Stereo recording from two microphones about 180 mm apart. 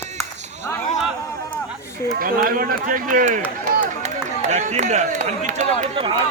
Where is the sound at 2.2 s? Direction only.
50° right (ahead or behind).